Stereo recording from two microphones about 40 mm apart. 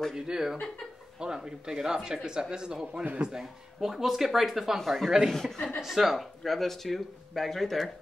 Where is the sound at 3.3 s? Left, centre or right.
Centre.